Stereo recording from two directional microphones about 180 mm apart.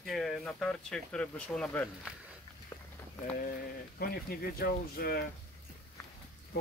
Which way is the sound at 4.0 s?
55° left (ahead or behind).